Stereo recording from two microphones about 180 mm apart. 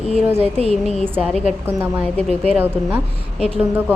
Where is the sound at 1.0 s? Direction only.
10° right (ahead or behind).